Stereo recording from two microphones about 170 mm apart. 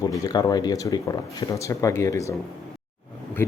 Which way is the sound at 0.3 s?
20° left (ahead or behind).